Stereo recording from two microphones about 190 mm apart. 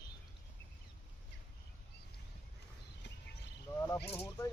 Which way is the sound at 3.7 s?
15° left (ahead or behind).